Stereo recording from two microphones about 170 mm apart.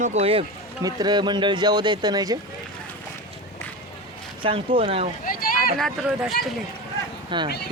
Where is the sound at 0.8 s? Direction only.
25° right (ahead or behind).